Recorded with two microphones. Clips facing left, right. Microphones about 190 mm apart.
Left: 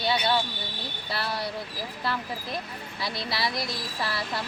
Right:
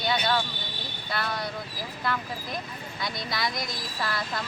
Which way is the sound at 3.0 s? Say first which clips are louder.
Left 1 dB; 30° left (ahead or behind).